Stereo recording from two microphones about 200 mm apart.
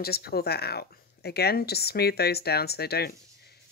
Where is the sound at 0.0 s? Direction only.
50° left (ahead or behind).